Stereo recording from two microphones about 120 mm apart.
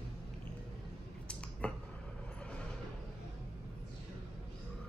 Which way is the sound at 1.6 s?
10° left (ahead or behind).